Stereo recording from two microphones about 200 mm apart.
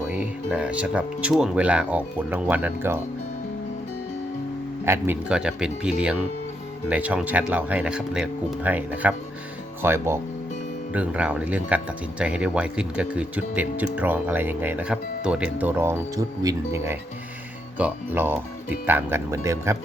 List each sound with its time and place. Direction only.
0.1 s speech: 5° right (ahead or behind)
4.9 s speech: 5° right (ahead or behind)